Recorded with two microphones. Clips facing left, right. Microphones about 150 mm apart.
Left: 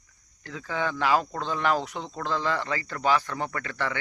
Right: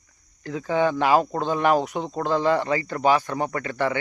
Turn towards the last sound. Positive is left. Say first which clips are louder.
# right 6 dB
turn(degrees=-20)  # may be behind; listen again after turning